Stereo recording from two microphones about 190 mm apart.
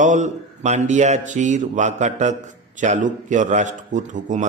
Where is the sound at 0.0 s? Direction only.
40° right (ahead or behind).